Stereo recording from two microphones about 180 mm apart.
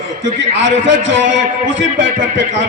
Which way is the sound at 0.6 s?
90° right.